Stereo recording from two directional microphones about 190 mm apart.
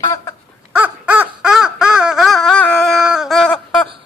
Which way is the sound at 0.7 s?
10° right (ahead or behind).